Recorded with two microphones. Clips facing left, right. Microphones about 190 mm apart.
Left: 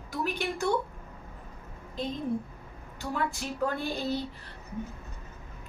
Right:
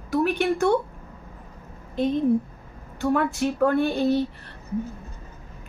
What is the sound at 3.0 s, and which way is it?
A woman's voice, 60° right (ahead or behind).